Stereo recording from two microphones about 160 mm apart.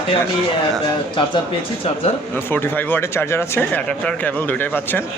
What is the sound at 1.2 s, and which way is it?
Speech, 30° left (ahead or behind).